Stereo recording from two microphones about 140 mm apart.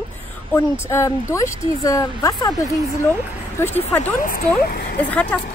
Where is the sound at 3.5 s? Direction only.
15° left (ahead or behind).